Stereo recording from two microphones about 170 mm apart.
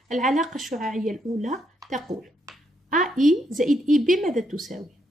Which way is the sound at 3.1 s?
Centre (ahead or behind).